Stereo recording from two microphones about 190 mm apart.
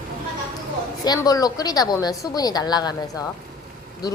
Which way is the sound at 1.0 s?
20° left (ahead or behind).